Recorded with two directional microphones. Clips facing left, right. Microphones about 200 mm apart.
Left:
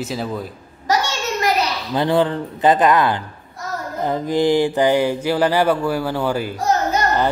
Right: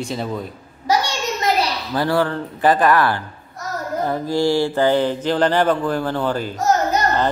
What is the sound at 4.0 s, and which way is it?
Mantra, 15° left (ahead or behind).